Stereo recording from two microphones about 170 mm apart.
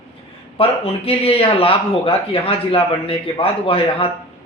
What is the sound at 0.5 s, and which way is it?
A man's voice, 30° left (ahead or behind).